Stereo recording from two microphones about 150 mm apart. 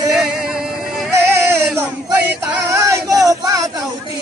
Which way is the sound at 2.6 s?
20° right (ahead or behind).